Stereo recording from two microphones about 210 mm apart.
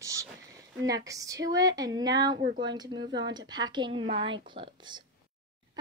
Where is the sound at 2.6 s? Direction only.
20° right (ahead or behind).